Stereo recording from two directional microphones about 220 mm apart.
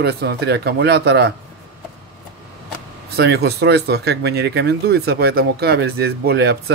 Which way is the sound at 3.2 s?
50° right (ahead or behind).